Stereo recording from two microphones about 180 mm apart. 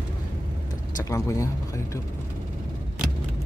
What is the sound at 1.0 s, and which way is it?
Speech, 20° left (ahead or behind).